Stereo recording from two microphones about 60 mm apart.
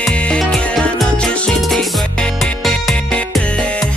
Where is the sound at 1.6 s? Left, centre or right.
Centre.